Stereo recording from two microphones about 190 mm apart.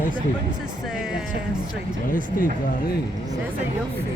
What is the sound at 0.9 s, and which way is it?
Speech, 5° right (ahead or behind).